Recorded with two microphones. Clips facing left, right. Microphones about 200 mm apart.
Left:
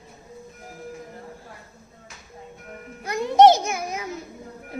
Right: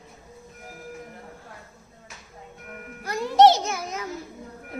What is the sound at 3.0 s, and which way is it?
Music, 20° left (ahead or behind).